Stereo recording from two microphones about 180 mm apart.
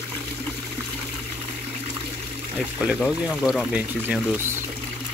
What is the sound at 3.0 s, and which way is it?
Speech, centre (ahead or behind).